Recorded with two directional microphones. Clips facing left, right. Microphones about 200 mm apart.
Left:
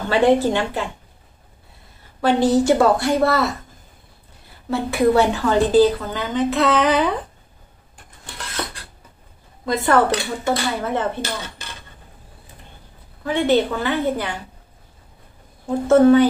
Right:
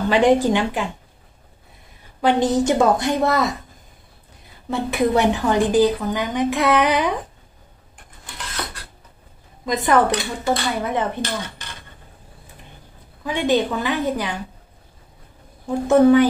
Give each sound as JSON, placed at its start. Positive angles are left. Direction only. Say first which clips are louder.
{"t": 0.1, "sound": "a woman's voice", "louder": "even", "side_deg": -15}
{"t": 2.2, "sound": "a woman's voice", "louder": "left 2 dB", "side_deg": -20}
{"t": 4.6, "sound": "a woman's voice", "louder": "left 2 dB", "side_deg": -20}
{"t": 9.7, "sound": "a woman's voice", "louder": "even", "side_deg": -15}
{"t": 13.2, "sound": "a woman's voice", "louder": "left 2 dB", "side_deg": -15}
{"t": 15.7, "sound": "a woman's voice", "louder": "left 1 dB", "side_deg": -15}